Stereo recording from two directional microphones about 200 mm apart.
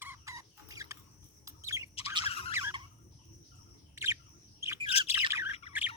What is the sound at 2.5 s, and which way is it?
Turkey, 15° right (ahead or behind).